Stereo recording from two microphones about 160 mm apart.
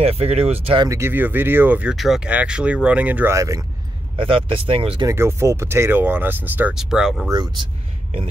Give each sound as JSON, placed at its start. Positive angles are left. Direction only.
{"t": 0.0, "sound": "speech", "side_deg": -40}
{"t": 0.8, "sound": "speech", "side_deg": -15}
{"t": 3.3, "sound": "speech", "side_deg": -20}
{"t": 4.2, "sound": "speech", "side_deg": -35}
{"t": 5.0, "sound": "speech", "side_deg": -15}
{"t": 7.2, "sound": "speech", "side_deg": -25}